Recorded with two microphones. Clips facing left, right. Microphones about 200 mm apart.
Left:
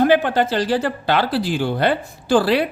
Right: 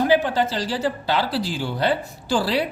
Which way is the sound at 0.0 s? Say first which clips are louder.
Left 3 dB; 60° left (ahead or behind).